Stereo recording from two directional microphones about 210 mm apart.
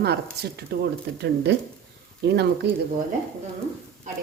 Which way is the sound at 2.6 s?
55° right (ahead or behind).